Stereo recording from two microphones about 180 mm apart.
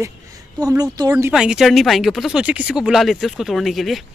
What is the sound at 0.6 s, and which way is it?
Speech, 20° right (ahead or behind).